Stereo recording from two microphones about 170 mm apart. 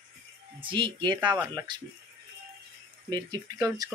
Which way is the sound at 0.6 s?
30° right (ahead or behind).